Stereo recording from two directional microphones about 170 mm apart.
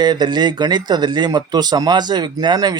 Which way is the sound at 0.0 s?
25° right (ahead or behind).